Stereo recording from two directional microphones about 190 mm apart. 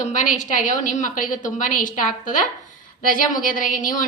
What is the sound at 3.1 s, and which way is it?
Speech, 45° left (ahead or behind).